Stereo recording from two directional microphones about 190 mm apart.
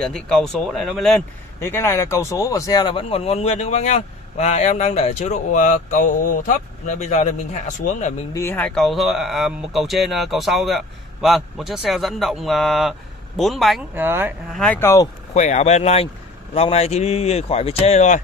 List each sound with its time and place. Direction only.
0.0 s speech: centre (ahead or behind)
1.6 s speech: 10° left (ahead or behind); by 7.3 s 35° left (ahead or behind)
8.3 s speech: 10° left (ahead or behind)
13.9 s speech: 10° right (ahead or behind)
14.5 s speech: centre (ahead or behind)
14.8 s speech: 15° left (ahead or behind)
15.3 s speech: 35° left (ahead or behind)